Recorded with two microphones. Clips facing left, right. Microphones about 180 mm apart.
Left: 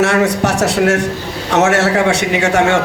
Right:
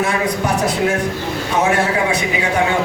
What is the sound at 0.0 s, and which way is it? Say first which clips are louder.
A man's voice: left 5 dB; 75° left (ahead or behind).